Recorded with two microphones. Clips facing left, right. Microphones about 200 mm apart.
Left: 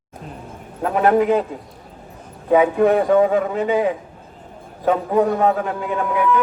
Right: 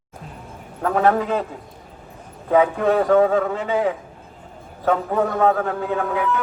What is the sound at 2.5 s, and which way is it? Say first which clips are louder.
A man's voice: left 3 dB; 15° left (ahead or behind).